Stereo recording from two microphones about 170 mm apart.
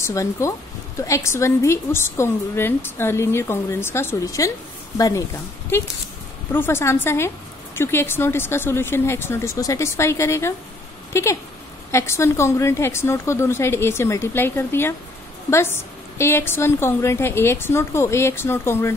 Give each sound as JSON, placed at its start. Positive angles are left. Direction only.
{"t": 0.0, "sound": "a woman's voice", "side_deg": 20}
{"t": 6.5, "sound": "speech", "side_deg": 15}